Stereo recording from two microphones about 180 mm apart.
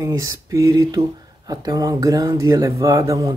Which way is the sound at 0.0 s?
20° right (ahead or behind).